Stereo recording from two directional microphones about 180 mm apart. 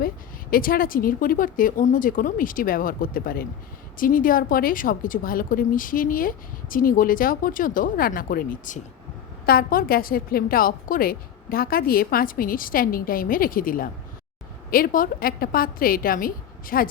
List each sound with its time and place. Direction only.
0.5 s a woman's voice: 55° left (ahead or behind)